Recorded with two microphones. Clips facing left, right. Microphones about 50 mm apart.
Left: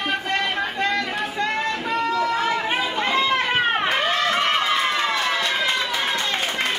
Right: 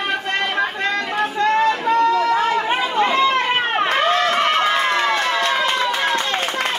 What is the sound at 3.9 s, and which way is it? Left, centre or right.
Run, right.